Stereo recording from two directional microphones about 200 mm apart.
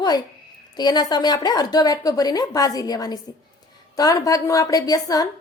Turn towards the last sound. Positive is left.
turn(degrees=20)  # may be behind; listen again after turning